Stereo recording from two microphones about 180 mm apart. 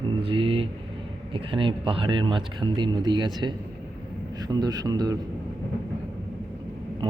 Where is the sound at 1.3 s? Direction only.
30° right (ahead or behind).